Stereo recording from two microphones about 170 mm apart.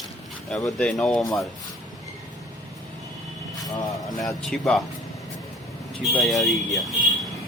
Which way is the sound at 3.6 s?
20° left (ahead or behind).